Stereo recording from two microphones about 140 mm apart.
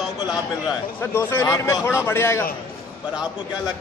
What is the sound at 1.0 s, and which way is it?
A man's voice, 20° left (ahead or behind).